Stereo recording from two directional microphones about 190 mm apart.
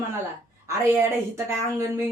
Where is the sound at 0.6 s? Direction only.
15° right (ahead or behind).